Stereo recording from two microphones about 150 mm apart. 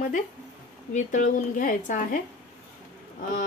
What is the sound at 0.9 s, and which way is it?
Speech, 55° left (ahead or behind).